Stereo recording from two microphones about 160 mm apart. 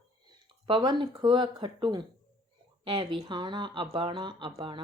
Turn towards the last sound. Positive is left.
turn(degrees=-30)  # may be behind; listen again after turning